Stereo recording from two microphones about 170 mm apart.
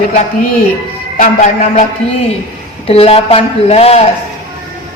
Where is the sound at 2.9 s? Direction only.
35° left (ahead or behind).